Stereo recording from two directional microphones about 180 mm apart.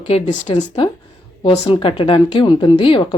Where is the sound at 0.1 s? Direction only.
40° left (ahead or behind).